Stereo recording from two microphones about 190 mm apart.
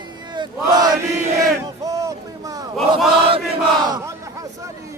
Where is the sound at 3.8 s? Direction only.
20° right (ahead or behind).